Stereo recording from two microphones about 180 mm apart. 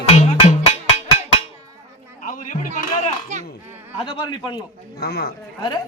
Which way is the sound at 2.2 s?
45° left (ahead or behind).